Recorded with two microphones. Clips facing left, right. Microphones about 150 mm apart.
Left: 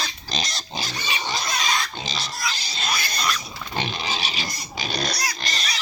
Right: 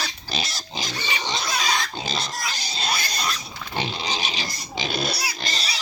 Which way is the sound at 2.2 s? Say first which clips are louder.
Even; 50° right (ahead or behind).